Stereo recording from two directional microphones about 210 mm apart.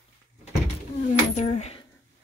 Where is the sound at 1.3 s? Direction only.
35° left (ahead or behind).